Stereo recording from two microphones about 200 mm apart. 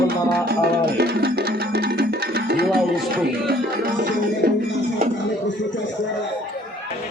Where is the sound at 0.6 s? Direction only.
55° right (ahead or behind).